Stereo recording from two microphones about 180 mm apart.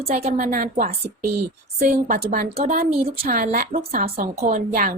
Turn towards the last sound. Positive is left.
turn(degrees=-45)  # may be behind; listen again after turning